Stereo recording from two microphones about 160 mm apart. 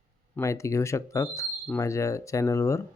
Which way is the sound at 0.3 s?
20° left (ahead or behind).